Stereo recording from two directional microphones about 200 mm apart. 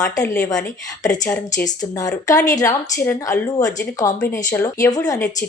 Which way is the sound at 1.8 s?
20° left (ahead or behind).